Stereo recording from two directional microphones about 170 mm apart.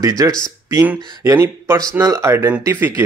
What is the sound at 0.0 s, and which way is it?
Speech, 20° right (ahead or behind).